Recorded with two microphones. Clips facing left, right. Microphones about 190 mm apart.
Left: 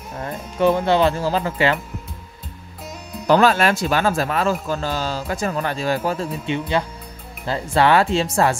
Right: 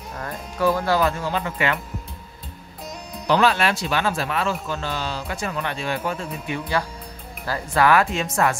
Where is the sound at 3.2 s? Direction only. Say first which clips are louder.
Left 4 dB; 45° left (ahead or behind).